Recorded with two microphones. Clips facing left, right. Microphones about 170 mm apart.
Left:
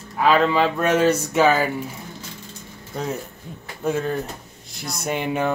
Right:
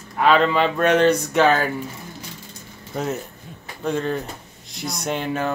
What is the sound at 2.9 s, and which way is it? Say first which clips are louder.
Speech: right 2 dB; centre (ahead or behind).